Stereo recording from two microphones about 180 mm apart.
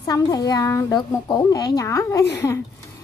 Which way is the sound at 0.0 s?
20° left (ahead or behind).